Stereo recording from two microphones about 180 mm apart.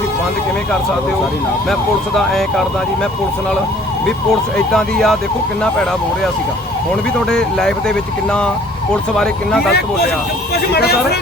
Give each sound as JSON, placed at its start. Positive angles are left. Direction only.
{"t": 2.1, "sound": "speech", "side_deg": 0}
{"t": 4.5, "sound": "speech", "side_deg": 0}
{"t": 7.3, "sound": "speech", "side_deg": 5}
{"t": 10.7, "sound": "speech", "side_deg": 60}